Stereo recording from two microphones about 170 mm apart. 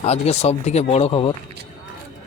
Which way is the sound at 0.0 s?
40° left (ahead or behind).